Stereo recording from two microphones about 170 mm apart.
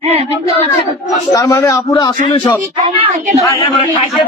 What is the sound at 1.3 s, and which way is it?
A man's voice, 20° left (ahead or behind).